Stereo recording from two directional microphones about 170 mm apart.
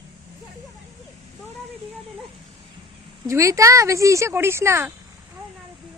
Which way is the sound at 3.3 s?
20° right (ahead or behind).